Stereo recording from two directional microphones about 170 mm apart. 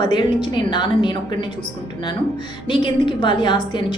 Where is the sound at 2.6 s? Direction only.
30° left (ahead or behind).